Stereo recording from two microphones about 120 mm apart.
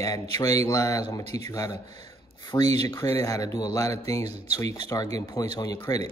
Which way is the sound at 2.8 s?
25° left (ahead or behind).